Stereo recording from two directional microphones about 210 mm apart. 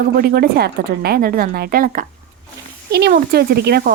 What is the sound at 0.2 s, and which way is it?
Speech, 45° right (ahead or behind).